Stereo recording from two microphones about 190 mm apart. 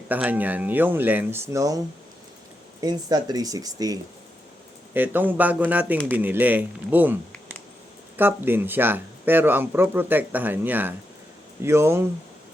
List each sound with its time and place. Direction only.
0.1 s speech: 10° right (ahead or behind)
2.8 s speech: 20° right (ahead or behind)